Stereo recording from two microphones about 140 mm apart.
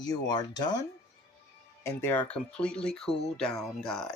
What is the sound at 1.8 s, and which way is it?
Speech, 15° left (ahead or behind).